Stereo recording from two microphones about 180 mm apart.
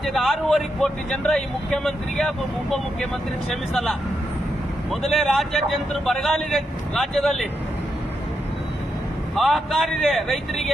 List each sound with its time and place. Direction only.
0.0 s speech: centre (ahead or behind)
9.3 s speech: centre (ahead or behind)